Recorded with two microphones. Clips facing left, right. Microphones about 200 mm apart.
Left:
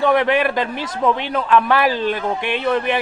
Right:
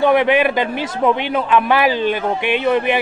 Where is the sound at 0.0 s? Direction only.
5° right (ahead or behind).